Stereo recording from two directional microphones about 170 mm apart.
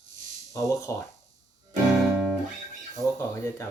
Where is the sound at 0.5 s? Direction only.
15° left (ahead or behind).